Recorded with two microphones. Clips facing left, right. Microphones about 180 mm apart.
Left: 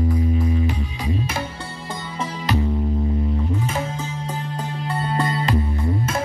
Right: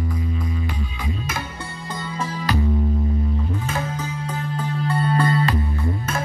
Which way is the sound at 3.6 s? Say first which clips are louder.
Left 1 dB; 25° left (ahead or behind).